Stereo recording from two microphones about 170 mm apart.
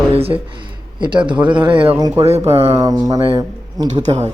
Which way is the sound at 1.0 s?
25° right (ahead or behind).